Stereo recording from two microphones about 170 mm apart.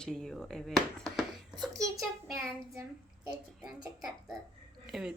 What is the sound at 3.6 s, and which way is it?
A woman's voice, centre (ahead or behind).